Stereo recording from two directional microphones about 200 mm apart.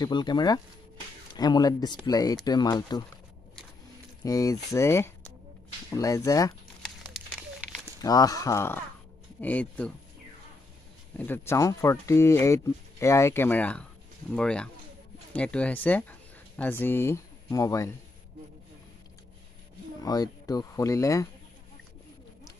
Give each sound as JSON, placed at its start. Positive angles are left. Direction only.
{"t": 0.0, "sound": "speech", "side_deg": 20}
{"t": 4.2, "sound": "speech", "side_deg": 15}
{"t": 7.2, "sound": "a sound", "side_deg": 0}
{"t": 8.0, "sound": "speech", "side_deg": 20}
{"t": 11.1, "sound": "speech", "side_deg": 10}
{"t": 20.0, "sound": "speech", "side_deg": 20}